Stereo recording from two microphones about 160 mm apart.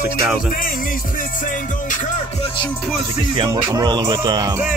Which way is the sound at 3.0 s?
30° right (ahead or behind).